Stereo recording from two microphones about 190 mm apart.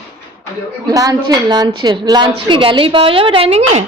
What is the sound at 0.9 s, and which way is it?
A woman's voice, 20° right (ahead or behind).